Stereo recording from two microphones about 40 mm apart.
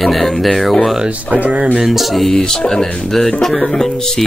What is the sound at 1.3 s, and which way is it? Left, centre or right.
Speech, right.